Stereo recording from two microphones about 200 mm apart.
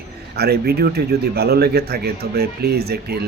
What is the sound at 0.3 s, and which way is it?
Speech, 55° right (ahead or behind).